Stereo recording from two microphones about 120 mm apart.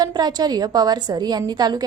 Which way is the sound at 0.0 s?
35° right (ahead or behind).